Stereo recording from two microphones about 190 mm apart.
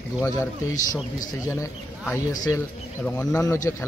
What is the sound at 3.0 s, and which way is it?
Speech, 5° left (ahead or behind).